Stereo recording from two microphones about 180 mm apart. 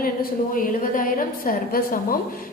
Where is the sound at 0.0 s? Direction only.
50° left (ahead or behind).